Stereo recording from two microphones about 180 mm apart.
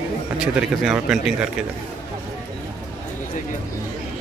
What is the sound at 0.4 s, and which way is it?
Speech, 5° right (ahead or behind).